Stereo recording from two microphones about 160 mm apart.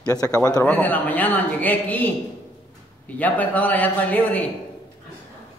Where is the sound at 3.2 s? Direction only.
10° left (ahead or behind).